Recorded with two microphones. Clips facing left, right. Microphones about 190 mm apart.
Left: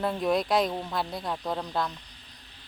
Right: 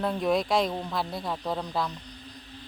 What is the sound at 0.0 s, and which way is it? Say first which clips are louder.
Speech: even; centre (ahead or behind).